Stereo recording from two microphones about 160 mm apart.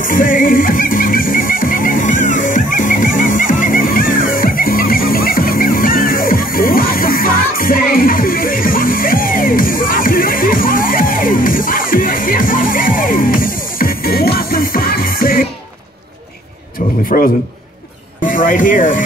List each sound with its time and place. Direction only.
0.0 s music: 60° left (ahead or behind)
16.8 s a sound: 55° left (ahead or behind)
18.2 s speech: 55° left (ahead or behind)